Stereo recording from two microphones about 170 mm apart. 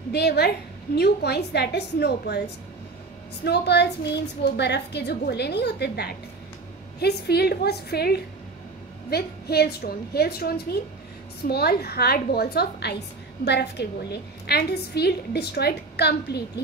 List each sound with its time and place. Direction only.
0.1 s a woman's voice: 75° left (ahead or behind)